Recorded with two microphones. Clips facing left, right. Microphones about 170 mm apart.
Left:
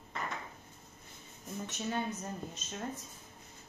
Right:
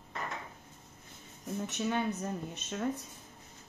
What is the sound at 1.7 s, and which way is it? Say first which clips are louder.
Speech: right 3 dB; 65° right (ahead or behind).